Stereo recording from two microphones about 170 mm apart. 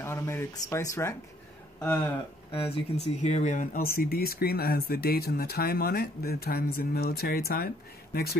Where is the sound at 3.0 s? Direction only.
40° left (ahead or behind).